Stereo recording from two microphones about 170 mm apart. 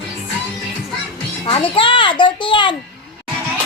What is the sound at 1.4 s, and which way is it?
A child's voice, 30° left (ahead or behind).